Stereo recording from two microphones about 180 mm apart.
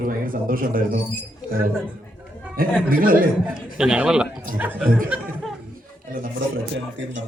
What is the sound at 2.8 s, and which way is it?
Speech, 55° right (ahead or behind).